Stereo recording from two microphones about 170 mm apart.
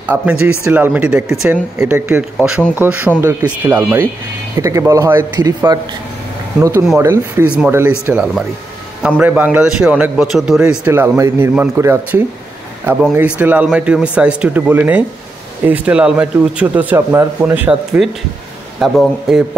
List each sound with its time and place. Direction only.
0.0 s a man's voice: 10° right (ahead or behind); by 5.8 s 25° right (ahead or behind)
7.0 s a man's voice: 15° right (ahead or behind)